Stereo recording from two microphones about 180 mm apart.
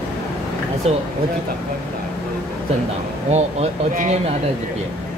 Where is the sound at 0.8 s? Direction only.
35° right (ahead or behind).